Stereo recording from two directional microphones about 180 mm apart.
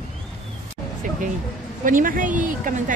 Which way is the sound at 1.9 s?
50° right (ahead or behind).